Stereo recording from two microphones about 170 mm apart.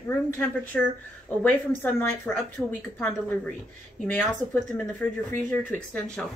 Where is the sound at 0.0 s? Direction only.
15° left (ahead or behind).